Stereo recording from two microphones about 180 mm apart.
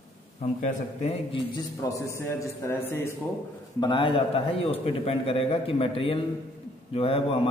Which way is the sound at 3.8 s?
25° left (ahead or behind).